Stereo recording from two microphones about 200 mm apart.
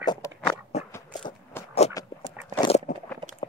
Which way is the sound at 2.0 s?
15° left (ahead or behind).